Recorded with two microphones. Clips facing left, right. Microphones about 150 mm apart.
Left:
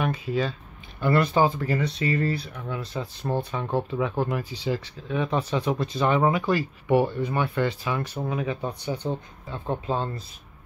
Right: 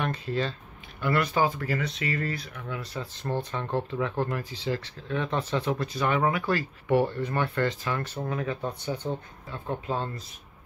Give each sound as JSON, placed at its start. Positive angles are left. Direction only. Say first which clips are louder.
{"t": 0.0, "sound": "speech", "louder": "left 3 dB", "side_deg": 10}
{"t": 1.0, "sound": "speech", "louder": "left 4 dB", "side_deg": 30}
{"t": 3.5, "sound": "speech", "louder": "left 3 dB", "side_deg": 10}
{"t": 9.5, "sound": "speech", "louder": "left 3 dB", "side_deg": 30}